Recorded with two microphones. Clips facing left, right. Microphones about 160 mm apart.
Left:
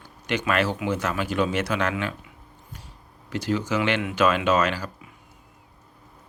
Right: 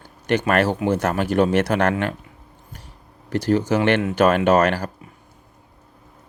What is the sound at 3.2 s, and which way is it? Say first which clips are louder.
Speech: right 7 dB; 55° right (ahead or behind).